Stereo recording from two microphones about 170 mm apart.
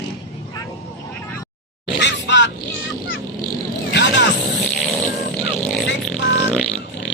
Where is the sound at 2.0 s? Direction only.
90° left.